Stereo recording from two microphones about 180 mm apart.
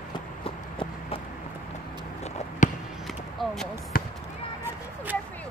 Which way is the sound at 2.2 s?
35° left (ahead or behind).